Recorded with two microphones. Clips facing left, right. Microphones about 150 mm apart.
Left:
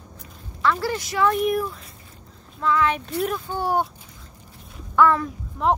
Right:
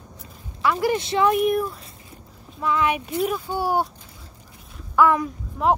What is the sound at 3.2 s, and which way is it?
Speech, 5° right (ahead or behind).